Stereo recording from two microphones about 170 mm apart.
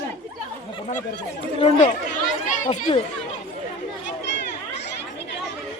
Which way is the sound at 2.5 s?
50° left (ahead or behind).